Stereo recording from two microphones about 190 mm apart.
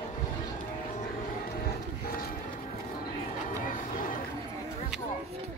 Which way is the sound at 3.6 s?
45° left (ahead or behind).